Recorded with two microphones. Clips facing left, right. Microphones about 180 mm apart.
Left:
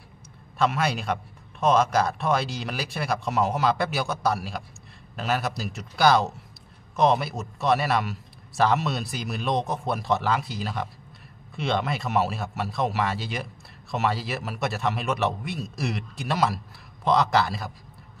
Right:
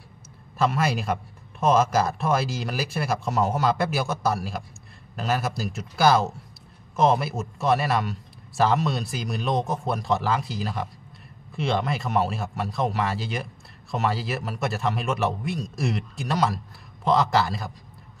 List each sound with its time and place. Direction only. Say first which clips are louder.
0.6 s a man's voice: right 1 dB; centre (ahead or behind)